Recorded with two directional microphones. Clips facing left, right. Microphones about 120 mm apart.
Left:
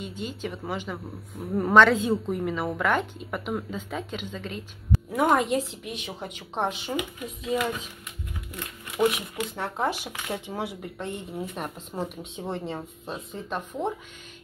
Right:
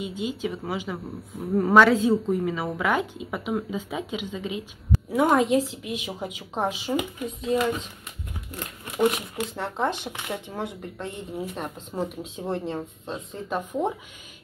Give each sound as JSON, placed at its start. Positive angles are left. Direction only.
{"t": 0.0, "sound": "speech", "side_deg": -5}
{"t": 8.5, "sound": "speech", "side_deg": -35}
{"t": 9.6, "sound": "speech", "side_deg": 5}